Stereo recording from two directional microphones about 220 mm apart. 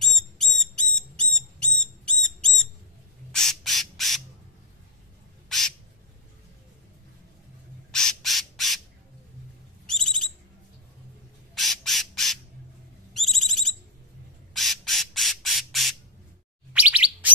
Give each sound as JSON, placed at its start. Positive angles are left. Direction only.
{"t": 0.0, "sound": "a sound", "side_deg": 0}
{"t": 3.3, "sound": "squawk", "side_deg": 0}
{"t": 7.9, "sound": "squawk", "side_deg": 0}
{"t": 9.8, "sound": "bird", "side_deg": 0}
{"t": 11.5, "sound": "squawk", "side_deg": 0}
{"t": 13.1, "sound": "a sound", "side_deg": 0}
{"t": 14.5, "sound": "squawk", "side_deg": 0}
{"t": 16.7, "sound": "chirp", "side_deg": -5}